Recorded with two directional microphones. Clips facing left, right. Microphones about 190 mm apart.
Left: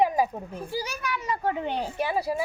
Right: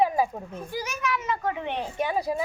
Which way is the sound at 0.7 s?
35° left (ahead or behind).